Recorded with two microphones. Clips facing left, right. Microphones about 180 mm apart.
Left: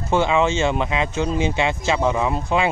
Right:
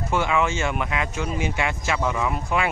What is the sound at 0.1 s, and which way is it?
Speech, 25° left (ahead or behind).